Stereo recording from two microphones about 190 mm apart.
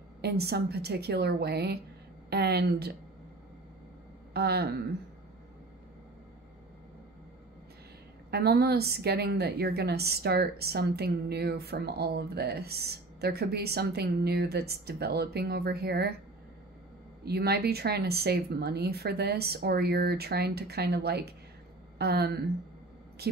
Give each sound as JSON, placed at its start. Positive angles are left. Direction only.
{"t": 0.2, "sound": "a woman's voice", "side_deg": -55}
{"t": 4.3, "sound": "a woman's voice", "side_deg": -55}
{"t": 8.3, "sound": "a woman's voice", "side_deg": -55}
{"t": 17.2, "sound": "a woman's voice", "side_deg": -55}